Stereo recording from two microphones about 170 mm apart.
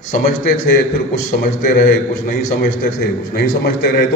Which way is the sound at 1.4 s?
55° left (ahead or behind).